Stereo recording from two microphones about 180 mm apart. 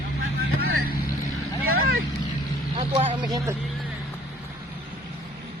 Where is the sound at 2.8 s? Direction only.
30° right (ahead or behind).